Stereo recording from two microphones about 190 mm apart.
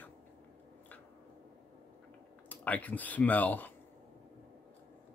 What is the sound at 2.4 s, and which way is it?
Speech, 10° left (ahead or behind).